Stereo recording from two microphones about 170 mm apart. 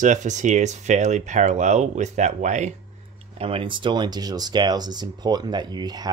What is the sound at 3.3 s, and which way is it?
Speech, 30° right (ahead or behind).